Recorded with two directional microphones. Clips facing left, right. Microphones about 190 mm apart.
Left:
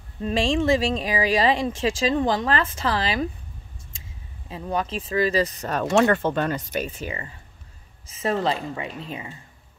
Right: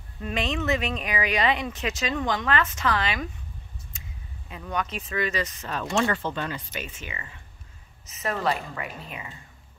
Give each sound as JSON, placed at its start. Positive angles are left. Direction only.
{"t": 0.2, "sound": "speech", "side_deg": 30}
{"t": 4.5, "sound": "speech", "side_deg": 30}
{"t": 5.9, "sound": "a woman's voice", "side_deg": 55}